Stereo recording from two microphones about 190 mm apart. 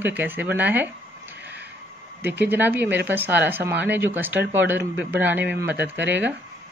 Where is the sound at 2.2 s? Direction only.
10° right (ahead or behind).